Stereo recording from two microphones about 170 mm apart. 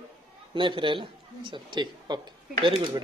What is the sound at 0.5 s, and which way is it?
Speech, 30° right (ahead or behind).